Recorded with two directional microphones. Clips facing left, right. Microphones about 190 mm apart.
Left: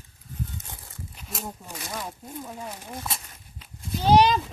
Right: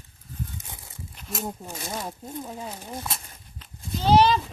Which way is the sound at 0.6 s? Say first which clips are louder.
Even; 15° right (ahead or behind).